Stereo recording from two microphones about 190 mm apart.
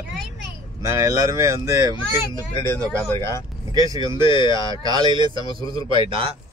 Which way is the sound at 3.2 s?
20° left (ahead or behind).